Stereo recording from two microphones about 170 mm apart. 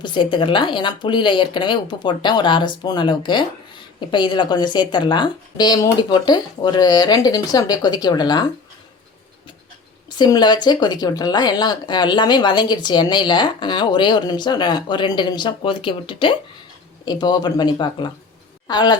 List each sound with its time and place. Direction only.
0.0 s speech: 30° left (ahead or behind)
10.2 s speech: 25° left (ahead or behind)